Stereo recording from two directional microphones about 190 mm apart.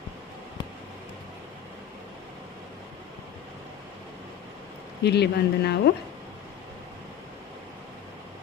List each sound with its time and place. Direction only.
5.0 s speech: 60° left (ahead or behind)